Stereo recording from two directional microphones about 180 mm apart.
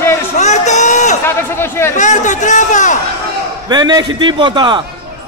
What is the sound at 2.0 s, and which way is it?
Speech, 45° left (ahead or behind).